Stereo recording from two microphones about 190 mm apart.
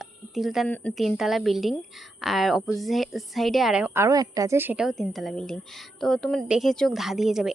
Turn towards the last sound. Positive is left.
turn(degrees=0)  # may be behind; listen again after turning